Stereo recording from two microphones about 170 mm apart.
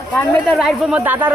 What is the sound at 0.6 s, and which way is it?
Speech, 5° right (ahead or behind).